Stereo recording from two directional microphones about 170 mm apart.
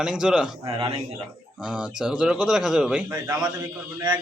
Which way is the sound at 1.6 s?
5° right (ahead or behind).